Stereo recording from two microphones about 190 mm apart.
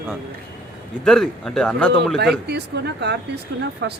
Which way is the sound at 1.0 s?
Centre (ahead or behind).